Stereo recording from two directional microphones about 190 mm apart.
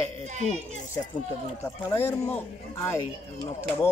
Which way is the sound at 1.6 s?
10° left (ahead or behind).